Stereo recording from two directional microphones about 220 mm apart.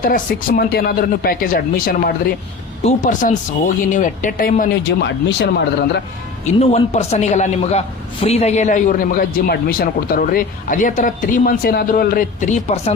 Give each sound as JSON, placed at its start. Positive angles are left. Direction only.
{"t": 0.1, "sound": "a man's voice", "side_deg": 40}
{"t": 4.9, "sound": "speech", "side_deg": 50}
{"t": 6.4, "sound": "a man's voice", "side_deg": 30}